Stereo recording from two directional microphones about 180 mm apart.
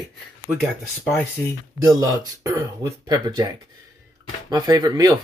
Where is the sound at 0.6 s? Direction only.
Centre (ahead or behind).